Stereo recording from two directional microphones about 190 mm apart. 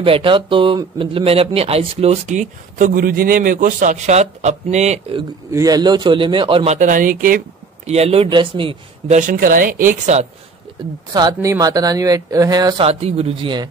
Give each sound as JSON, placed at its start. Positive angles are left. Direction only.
{"t": 0.0, "sound": "speech", "side_deg": -30}
{"t": 5.5, "sound": "speech", "side_deg": -20}
{"t": 11.1, "sound": "speech", "side_deg": -20}